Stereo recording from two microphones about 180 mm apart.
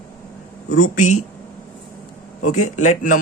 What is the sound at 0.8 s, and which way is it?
Speech, 45° left (ahead or behind).